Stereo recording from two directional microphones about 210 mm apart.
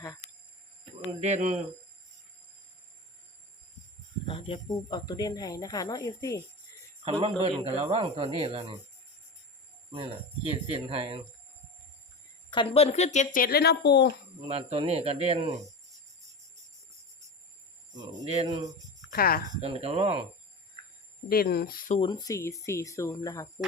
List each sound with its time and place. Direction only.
1.2 s speech: 35° right (ahead or behind)
4.3 s speech: 25° left (ahead or behind)
7.0 s speech: 30° right (ahead or behind)
9.9 s speech: 25° right (ahead or behind)
12.5 s speech: 25° left (ahead or behind); by 14.1 s 55° left (ahead or behind)
14.4 s speech: 30° right (ahead or behind)
17.9 s a sound: 20° right (ahead or behind)
18.3 s speech: 20° right (ahead or behind)
19.1 s speech: 45° left (ahead or behind)
19.5 s speech: 30° right (ahead or behind)
21.2 s speech: 45° left (ahead or behind)
22.0 s speech: 20° left (ahead or behind)